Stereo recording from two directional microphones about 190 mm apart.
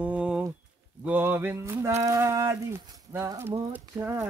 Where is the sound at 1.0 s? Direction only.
10° right (ahead or behind).